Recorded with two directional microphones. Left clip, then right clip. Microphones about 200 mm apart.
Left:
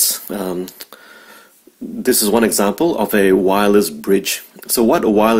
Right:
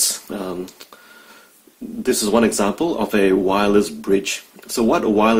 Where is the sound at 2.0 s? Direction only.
40° left (ahead or behind).